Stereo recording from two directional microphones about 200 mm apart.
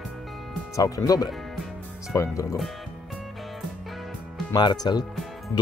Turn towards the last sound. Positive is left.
turn(degrees=20)  # may be behind; listen again after turning